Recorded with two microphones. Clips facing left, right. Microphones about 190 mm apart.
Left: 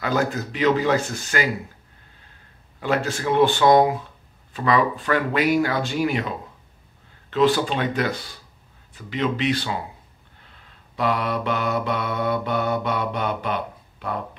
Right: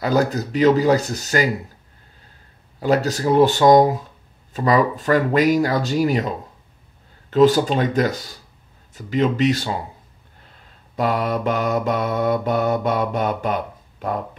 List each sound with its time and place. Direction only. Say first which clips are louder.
0.0 s speech: right 4 dB; 40° right (ahead or behind)
2.8 s speech: right 5 dB; 40° right (ahead or behind)
8.9 s mantra: right 5 dB; 45° right (ahead or behind)
11.0 s mantra: right 3 dB; 45° right (ahead or behind)